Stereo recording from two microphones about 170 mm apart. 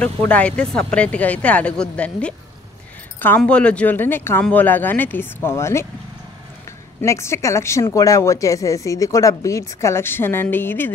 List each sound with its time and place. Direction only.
0.0 s speech: 10° left (ahead or behind)
7.0 s speech: 15° left (ahead or behind)